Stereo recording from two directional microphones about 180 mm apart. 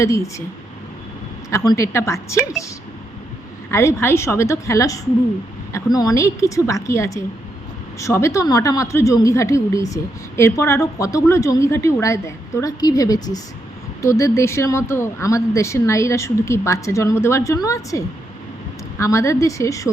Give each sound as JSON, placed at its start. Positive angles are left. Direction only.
{"t": 0.0, "sound": "speech", "side_deg": 15}
{"t": 1.5, "sound": "speech", "side_deg": 15}
{"t": 3.7, "sound": "speech", "side_deg": 15}